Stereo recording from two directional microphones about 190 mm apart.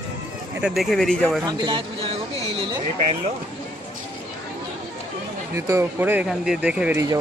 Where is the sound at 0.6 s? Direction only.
Centre (ahead or behind).